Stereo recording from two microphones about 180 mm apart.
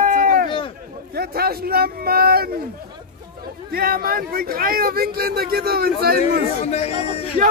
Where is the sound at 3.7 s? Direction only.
55° right (ahead or behind).